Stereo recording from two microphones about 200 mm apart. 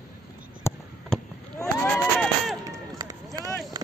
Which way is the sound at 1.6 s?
Centre (ahead or behind).